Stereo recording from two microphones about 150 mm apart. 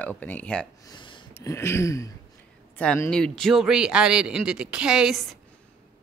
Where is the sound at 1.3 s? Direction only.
20° left (ahead or behind).